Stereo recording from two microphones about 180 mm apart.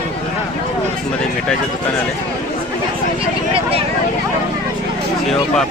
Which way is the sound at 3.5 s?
30° right (ahead or behind).